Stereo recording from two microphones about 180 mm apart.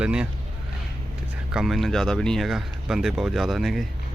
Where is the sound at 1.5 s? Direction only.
Centre (ahead or behind).